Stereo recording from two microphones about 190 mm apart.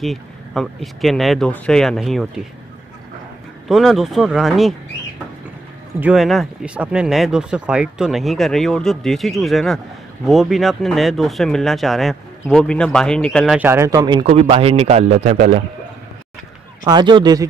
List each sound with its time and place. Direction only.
0.0 s a sound: centre (ahead or behind)
1.0 s speech: centre (ahead or behind)
3.6 s speech: centre (ahead or behind)
5.9 s speech: 5° right (ahead or behind)
13.6 s speech: 15° right (ahead or behind)
14.2 s a man's voice: 35° right (ahead or behind)
16.8 s speech: 20° right (ahead or behind)